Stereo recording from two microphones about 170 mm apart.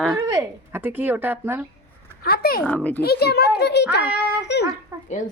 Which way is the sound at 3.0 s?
70° left (ahead or behind).